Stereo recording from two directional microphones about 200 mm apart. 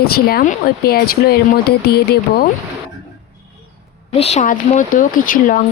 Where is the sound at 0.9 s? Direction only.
50° left (ahead or behind).